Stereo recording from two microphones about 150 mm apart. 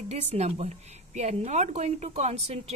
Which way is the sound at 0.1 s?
45° right (ahead or behind).